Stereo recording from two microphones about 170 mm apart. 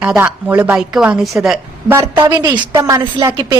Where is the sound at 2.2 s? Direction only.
25° right (ahead or behind).